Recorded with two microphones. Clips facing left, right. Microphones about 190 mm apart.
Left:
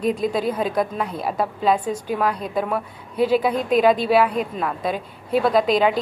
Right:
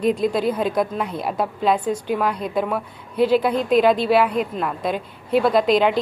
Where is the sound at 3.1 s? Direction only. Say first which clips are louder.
Right 1 dB; 45° left (ahead or behind).